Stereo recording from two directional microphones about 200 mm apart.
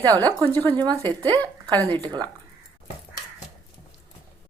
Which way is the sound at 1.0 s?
20° right (ahead or behind).